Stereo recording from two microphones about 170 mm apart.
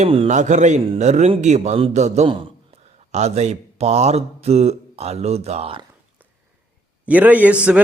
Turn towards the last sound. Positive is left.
turn(degrees=-10)  # may be behind; listen again after turning